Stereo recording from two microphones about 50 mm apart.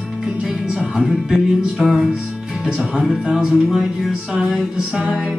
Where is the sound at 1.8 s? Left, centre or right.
Centre.